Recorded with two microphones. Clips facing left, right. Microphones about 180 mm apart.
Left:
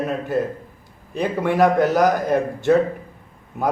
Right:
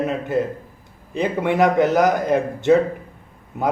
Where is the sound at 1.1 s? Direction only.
20° right (ahead or behind).